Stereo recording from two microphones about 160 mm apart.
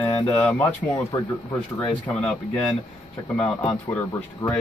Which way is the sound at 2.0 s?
5° left (ahead or behind).